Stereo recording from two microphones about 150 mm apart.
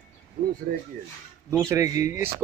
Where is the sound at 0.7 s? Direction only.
75° right (ahead or behind).